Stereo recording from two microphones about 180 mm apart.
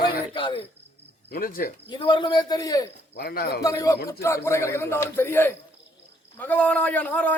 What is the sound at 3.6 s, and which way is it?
A man's voice, 20° left (ahead or behind).